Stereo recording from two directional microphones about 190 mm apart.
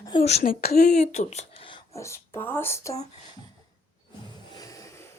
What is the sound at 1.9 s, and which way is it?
Speech, 15° left (ahead or behind).